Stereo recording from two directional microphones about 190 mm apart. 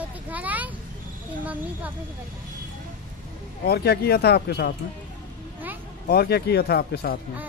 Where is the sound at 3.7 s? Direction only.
55° left (ahead or behind).